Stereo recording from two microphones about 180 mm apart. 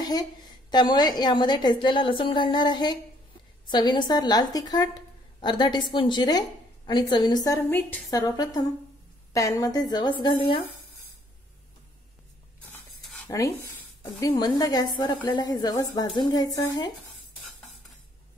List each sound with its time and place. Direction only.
0.0 s a woman's voice: 20° left (ahead or behind)
13.3 s a woman's voice: 15° left (ahead or behind)